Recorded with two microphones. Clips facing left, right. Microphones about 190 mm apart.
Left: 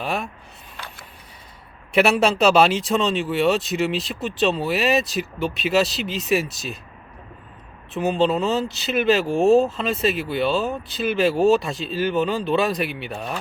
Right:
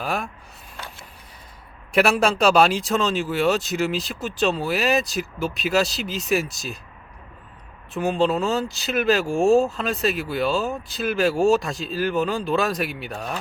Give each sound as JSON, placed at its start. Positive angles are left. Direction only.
{"t": 0.0, "sound": "speech", "side_deg": 0}
{"t": 1.9, "sound": "speech", "side_deg": 0}
{"t": 7.9, "sound": "speech", "side_deg": 0}